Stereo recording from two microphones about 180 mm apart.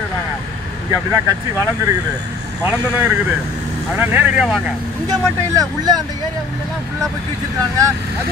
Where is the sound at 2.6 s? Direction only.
10° right (ahead or behind).